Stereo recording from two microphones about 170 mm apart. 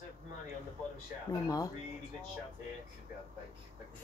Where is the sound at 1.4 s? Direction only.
20° left (ahead or behind).